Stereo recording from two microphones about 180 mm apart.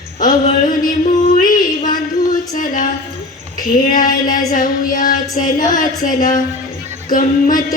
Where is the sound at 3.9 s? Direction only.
50° left (ahead or behind).